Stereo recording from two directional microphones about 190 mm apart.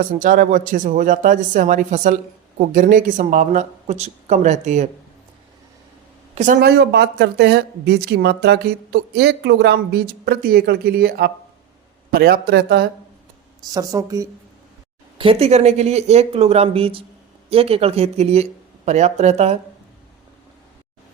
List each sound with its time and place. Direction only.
0.1 s speech: 45° right (ahead or behind)
6.3 s speech: 40° right (ahead or behind)
6.6 s speech: 60° right (ahead or behind)
13.7 s speech: 20° right (ahead or behind)
15.2 s speech: 30° right (ahead or behind)